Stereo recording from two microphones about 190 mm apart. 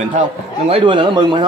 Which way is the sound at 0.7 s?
30° right (ahead or behind).